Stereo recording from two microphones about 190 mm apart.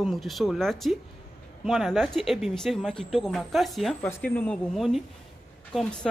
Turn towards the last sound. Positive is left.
turn(degrees=5)  # may be behind; listen again after turning